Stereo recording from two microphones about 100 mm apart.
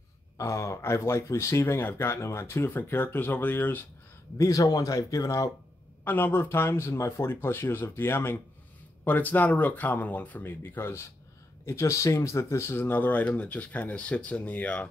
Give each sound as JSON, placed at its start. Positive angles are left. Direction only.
{"t": 0.4, "sound": "speech", "side_deg": 30}
{"t": 4.4, "sound": "speech", "side_deg": 35}
{"t": 6.0, "sound": "speech", "side_deg": 20}